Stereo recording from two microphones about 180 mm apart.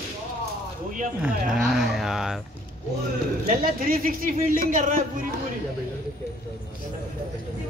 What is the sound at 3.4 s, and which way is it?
A man's voice, 55° right (ahead or behind).